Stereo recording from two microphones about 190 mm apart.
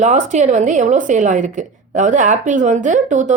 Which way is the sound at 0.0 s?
40° right (ahead or behind).